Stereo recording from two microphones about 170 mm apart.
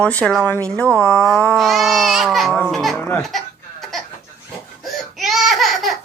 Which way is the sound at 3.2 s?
Centre (ahead or behind).